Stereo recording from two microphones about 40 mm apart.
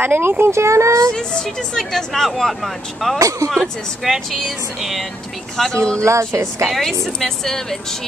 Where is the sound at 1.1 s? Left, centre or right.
Centre.